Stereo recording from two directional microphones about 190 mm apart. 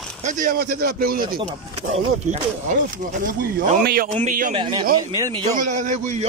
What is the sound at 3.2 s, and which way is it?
A man's voice, 50° right (ahead or behind).